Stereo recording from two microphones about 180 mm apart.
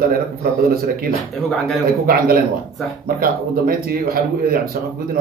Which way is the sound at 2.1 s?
55° right (ahead or behind).